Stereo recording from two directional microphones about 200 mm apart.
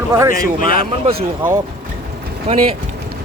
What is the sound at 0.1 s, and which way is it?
Speech, 15° right (ahead or behind).